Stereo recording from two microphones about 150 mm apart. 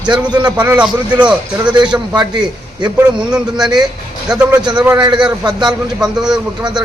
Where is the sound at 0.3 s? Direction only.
30° right (ahead or behind).